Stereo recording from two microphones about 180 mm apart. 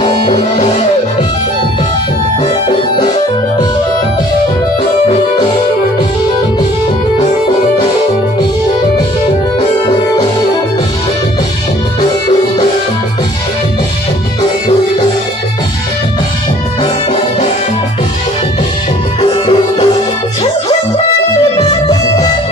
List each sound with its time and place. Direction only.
0.0 s music: 30° left (ahead or behind)
16.8 s music: 35° left (ahead or behind)
19.4 s music: 30° left (ahead or behind)
21.6 s music: 25° left (ahead or behind)